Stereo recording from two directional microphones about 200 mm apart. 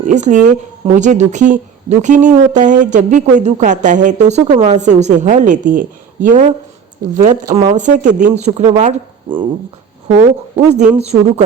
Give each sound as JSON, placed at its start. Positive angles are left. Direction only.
{"t": 0.0, "sound": "speech", "side_deg": -35}
{"t": 10.6, "sound": "speech", "side_deg": -5}
{"t": 10.9, "sound": "speech", "side_deg": -30}